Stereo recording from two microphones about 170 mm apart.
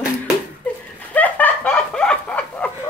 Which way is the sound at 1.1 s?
10° left (ahead or behind).